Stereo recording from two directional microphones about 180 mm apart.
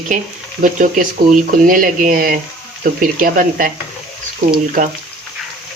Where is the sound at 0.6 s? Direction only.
45° right (ahead or behind).